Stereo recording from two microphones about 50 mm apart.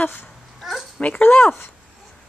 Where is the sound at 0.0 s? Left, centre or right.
Left.